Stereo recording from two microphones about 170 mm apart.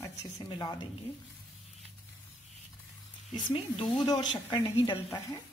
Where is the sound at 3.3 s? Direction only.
30° left (ahead or behind).